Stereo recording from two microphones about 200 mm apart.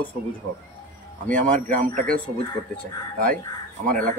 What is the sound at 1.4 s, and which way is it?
Speech, 40° right (ahead or behind).